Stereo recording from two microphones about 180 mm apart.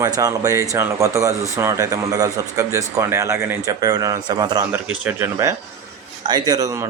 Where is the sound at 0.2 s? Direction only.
20° right (ahead or behind).